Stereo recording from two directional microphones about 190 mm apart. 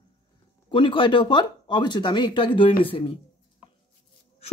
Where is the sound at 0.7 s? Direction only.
25° left (ahead or behind).